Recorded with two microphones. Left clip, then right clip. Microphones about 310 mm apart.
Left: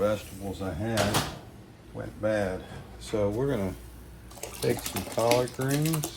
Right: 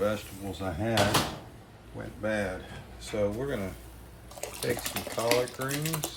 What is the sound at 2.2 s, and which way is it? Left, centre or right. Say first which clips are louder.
Speech: left 3 dB; centre.